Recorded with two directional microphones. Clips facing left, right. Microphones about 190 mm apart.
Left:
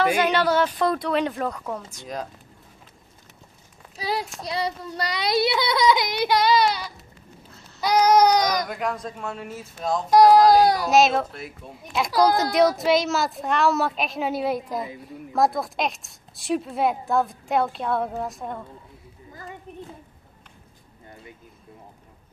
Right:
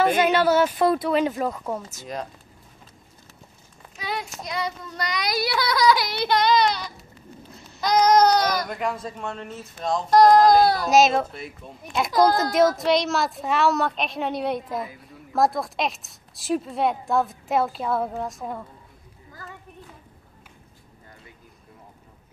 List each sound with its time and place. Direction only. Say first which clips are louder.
0.2 s speech: right 2 dB; 5° right (ahead or behind)
3.9 s a sound: left 3 dB; 35° left (ahead or behind)
4.4 s a child's voice: left 2 dB; 30° left (ahead or behind); by 8.6 s 15° left (ahead or behind)
8.6 s speech: even; centre (ahead or behind)
10.9 s speech: right 1 dB; centre (ahead or behind)